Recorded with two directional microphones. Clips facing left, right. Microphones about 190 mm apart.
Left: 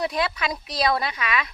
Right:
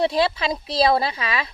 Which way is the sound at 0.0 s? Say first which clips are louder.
Right 5 dB; 30° right (ahead or behind).